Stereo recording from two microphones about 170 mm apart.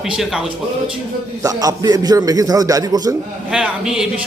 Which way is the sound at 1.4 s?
20° right (ahead or behind).